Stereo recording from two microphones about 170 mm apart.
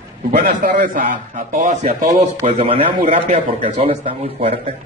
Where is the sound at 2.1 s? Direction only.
35° right (ahead or behind).